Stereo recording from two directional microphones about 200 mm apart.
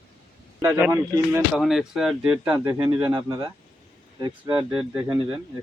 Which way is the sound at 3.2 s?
20° right (ahead or behind).